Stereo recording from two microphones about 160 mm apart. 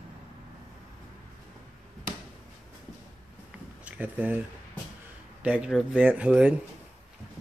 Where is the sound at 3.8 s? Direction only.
10° right (ahead or behind).